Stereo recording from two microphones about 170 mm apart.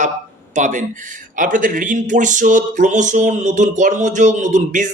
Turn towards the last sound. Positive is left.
turn(degrees=-50)  # may be behind; listen again after turning